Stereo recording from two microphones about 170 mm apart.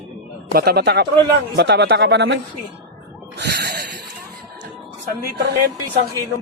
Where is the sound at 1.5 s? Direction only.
90° right.